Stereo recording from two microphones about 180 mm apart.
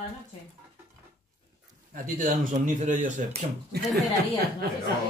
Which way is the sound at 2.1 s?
40° right (ahead or behind).